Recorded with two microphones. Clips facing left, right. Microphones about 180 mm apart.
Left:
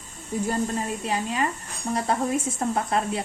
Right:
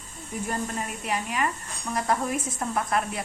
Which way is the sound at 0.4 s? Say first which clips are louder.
Left 4 dB; 30° left (ahead or behind).